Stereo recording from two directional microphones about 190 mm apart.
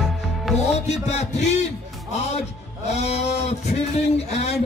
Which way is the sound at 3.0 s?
35° left (ahead or behind).